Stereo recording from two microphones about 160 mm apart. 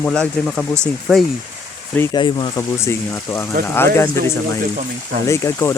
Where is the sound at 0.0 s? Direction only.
5° left (ahead or behind).